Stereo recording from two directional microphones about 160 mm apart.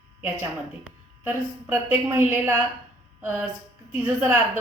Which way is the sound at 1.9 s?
15° right (ahead or behind).